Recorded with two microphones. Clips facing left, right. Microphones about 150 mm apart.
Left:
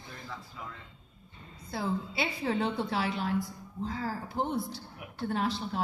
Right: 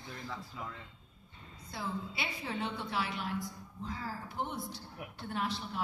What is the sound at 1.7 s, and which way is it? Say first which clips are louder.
Speech: left 6 dB; 30° left (ahead or behind).